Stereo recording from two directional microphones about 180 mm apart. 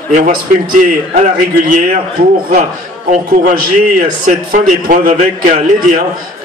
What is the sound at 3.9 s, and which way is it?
A man's voice, 50° right (ahead or behind).